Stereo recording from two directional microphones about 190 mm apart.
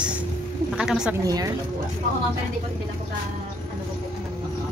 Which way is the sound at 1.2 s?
20° right (ahead or behind).